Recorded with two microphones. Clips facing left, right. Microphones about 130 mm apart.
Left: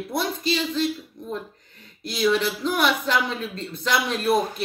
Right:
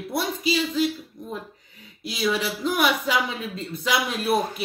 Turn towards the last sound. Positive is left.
turn(degrees=-5)  # may be behind; listen again after turning